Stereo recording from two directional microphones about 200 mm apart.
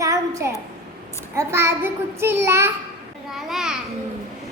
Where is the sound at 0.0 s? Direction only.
15° right (ahead or behind).